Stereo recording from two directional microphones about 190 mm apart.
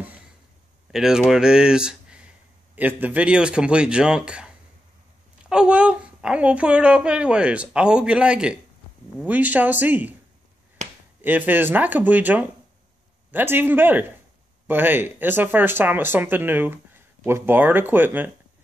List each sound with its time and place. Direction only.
0.9 s a woman's voice: centre (ahead or behind)
5.5 s a woman's voice: 5° right (ahead or behind)
10.8 s finger snapping: 40° right (ahead or behind)
11.1 s speech: 10° right (ahead or behind)